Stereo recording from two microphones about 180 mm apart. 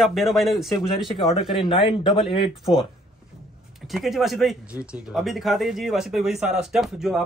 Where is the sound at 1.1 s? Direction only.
25° left (ahead or behind).